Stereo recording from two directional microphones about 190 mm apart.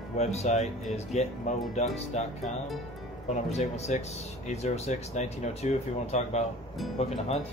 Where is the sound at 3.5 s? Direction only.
35° left (ahead or behind).